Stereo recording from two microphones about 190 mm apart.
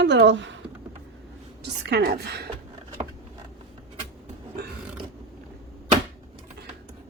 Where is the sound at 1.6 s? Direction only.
65° right (ahead or behind).